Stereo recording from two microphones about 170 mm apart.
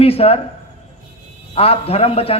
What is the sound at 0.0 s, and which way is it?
Speech, 35° left (ahead or behind).